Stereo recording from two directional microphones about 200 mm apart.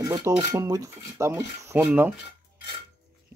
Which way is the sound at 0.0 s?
15° right (ahead or behind).